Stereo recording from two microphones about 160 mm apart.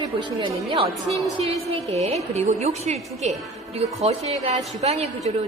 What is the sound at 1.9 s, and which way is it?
A woman's voice, 40° right (ahead or behind).